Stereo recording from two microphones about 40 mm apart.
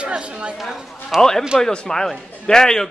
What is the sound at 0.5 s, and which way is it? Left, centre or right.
Speech, centre.